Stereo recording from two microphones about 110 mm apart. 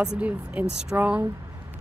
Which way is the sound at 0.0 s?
10° right (ahead or behind).